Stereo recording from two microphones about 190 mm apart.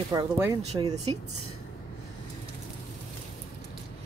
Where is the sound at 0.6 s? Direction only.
35° right (ahead or behind).